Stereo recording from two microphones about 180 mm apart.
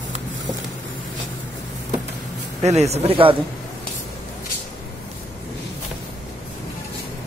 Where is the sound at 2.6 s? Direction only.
35° right (ahead or behind).